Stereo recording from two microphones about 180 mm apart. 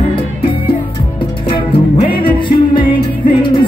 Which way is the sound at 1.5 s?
30° left (ahead or behind).